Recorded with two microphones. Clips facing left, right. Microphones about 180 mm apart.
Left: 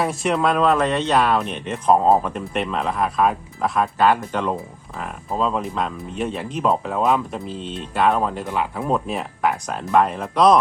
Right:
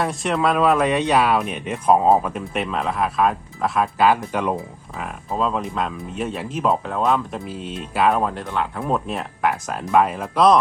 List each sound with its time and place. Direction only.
0.0 s speech: centre (ahead or behind)
7.4 s speech: 5° right (ahead or behind)